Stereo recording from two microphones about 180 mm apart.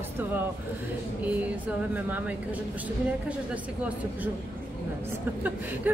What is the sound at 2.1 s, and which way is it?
Speech, 10° right (ahead or behind).